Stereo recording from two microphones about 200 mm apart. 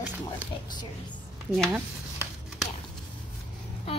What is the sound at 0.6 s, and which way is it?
Speech, 20° left (ahead or behind).